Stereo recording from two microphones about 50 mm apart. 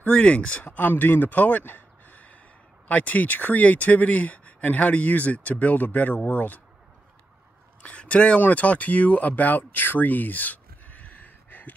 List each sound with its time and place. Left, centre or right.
0.0 s speech: left
7.8 s a sound: left
8.4 s speech: left